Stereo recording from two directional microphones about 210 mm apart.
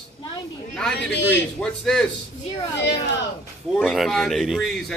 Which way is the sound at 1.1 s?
55° left (ahead or behind).